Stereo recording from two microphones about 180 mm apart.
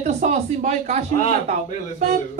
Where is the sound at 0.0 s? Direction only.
40° right (ahead or behind).